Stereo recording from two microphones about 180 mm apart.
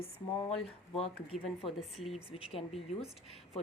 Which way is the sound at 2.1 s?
30° left (ahead or behind).